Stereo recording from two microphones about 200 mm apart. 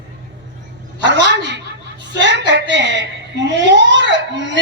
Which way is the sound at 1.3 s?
60° right (ahead or behind).